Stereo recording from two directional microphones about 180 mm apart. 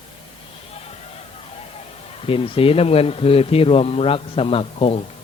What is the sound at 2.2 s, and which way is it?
A man's voice, 30° left (ahead or behind).